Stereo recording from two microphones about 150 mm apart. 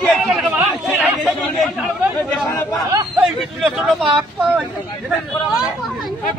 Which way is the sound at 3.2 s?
Centre (ahead or behind).